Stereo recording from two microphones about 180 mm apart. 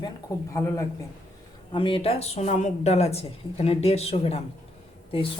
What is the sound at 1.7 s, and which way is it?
A woman's voice, 30° left (ahead or behind).